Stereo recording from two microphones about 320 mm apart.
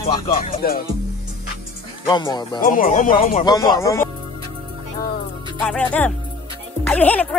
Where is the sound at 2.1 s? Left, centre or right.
Centre.